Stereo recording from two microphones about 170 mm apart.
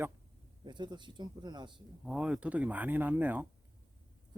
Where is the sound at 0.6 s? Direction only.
25° right (ahead or behind).